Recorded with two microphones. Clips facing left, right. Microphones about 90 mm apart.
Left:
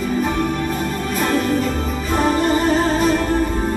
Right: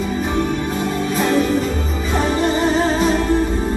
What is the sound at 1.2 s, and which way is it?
Music, 45° left (ahead or behind).